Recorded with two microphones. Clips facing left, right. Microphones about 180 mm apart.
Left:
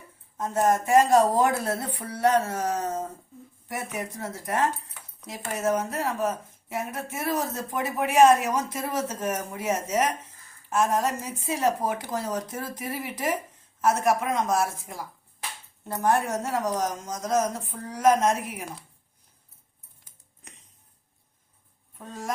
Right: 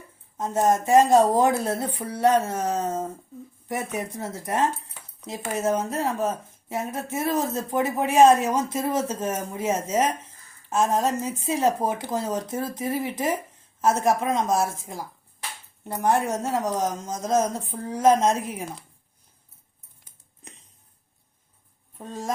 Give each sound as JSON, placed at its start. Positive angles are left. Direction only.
{"t": 0.3, "sound": "speech", "side_deg": -25}
{"t": 21.9, "sound": "speech", "side_deg": -30}